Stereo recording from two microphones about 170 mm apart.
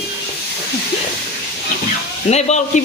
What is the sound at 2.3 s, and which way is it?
Speech, 40° left (ahead or behind).